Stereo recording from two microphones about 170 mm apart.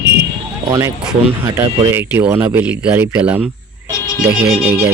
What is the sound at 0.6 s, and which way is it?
Speech, 20° right (ahead or behind).